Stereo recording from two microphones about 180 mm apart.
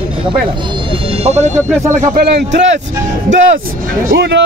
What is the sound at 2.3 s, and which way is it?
Speech, 70° right (ahead or behind).